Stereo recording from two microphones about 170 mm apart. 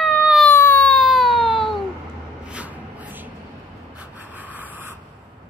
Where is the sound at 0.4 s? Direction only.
10° left (ahead or behind); by 3.3 s 10° right (ahead or behind).